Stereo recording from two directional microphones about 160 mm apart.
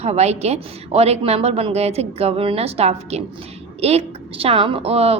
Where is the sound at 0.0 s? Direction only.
40° right (ahead or behind).